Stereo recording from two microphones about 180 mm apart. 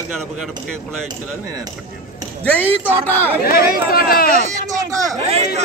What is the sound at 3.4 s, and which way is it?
Speech, 55° left (ahead or behind).